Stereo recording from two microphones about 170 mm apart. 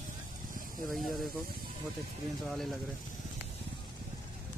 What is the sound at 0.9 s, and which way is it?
Speech, centre (ahead or behind).